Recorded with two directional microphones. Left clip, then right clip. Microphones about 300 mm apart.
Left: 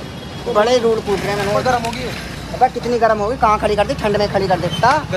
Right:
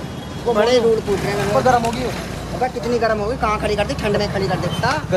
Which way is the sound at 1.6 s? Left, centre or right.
Centre.